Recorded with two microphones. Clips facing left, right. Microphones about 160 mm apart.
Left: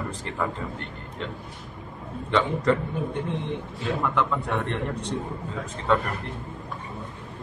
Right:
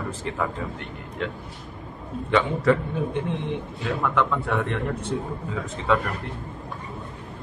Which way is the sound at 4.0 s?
Centre (ahead or behind).